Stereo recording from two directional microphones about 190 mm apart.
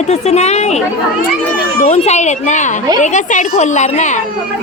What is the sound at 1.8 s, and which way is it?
A woman's voice, 35° left (ahead or behind).